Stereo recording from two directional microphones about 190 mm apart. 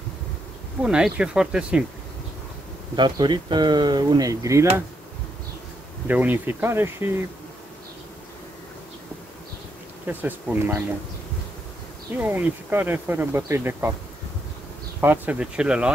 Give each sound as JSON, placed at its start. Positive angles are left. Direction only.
{"t": 0.8, "sound": "speech", "side_deg": -5}
{"t": 3.0, "sound": "speech", "side_deg": -25}
{"t": 6.0, "sound": "speech", "side_deg": -10}
{"t": 10.0, "sound": "speech", "side_deg": -10}
{"t": 12.2, "sound": "speech", "side_deg": -10}
{"t": 15.0, "sound": "speech", "side_deg": -10}